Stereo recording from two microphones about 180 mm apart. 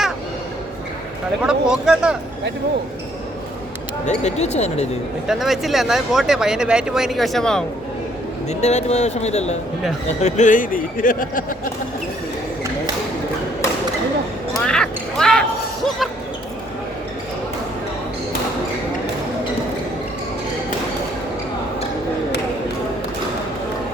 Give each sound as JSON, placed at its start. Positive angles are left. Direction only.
{"t": 1.4, "sound": "speech", "side_deg": -5}
{"t": 4.0, "sound": "speech", "side_deg": 40}
{"t": 5.3, "sound": "speech", "side_deg": 0}
{"t": 8.4, "sound": "speech", "side_deg": 40}
{"t": 14.6, "sound": "quack", "side_deg": 5}